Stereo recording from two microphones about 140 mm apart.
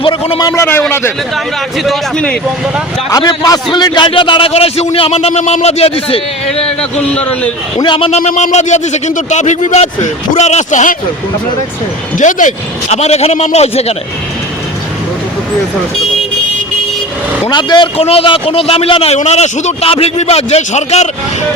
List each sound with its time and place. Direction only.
0.0 s a man's voice: 40° left (ahead or behind); by 1.1 s 15° left (ahead or behind)
1.8 s a man's voice: 5° left (ahead or behind)
3.1 s a man's voice: 25° left (ahead or behind); by 6.2 s 45° left (ahead or behind)
6.5 s a man's voice: 10° left (ahead or behind)
7.8 s a man's voice: 35° left (ahead or behind)
8.2 s speech: 60° left (ahead or behind)
12.1 s a man's voice: 65° left (ahead or behind); by 13.9 s 50° left (ahead or behind)
17.5 s a man's voice: 30° left (ahead or behind)
17.9 s a man's voice: 45° left (ahead or behind)